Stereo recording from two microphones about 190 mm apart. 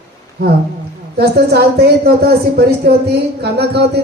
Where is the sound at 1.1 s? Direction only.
55° right (ahead or behind).